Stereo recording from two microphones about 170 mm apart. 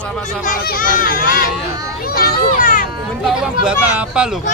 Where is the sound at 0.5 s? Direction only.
55° left (ahead or behind).